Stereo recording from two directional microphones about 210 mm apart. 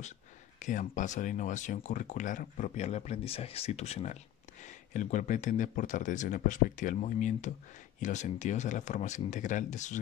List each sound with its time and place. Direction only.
0.6 s speech: 35° left (ahead or behind)